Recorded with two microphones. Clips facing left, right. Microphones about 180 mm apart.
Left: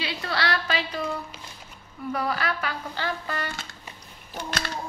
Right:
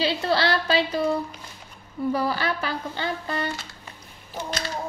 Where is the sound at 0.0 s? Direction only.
30° right (ahead or behind).